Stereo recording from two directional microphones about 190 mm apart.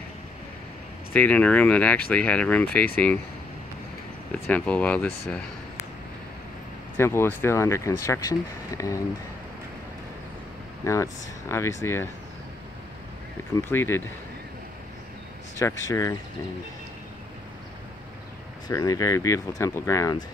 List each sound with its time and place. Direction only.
1.1 s speech: 10° left (ahead or behind)
4.3 s speech: 5° left (ahead or behind)
7.0 s speech: 15° left (ahead or behind)
10.8 s speech: 15° left (ahead or behind)
13.6 s speech: 10° left (ahead or behind)
15.6 s speech: 15° left (ahead or behind)
18.7 s speech: 20° left (ahead or behind)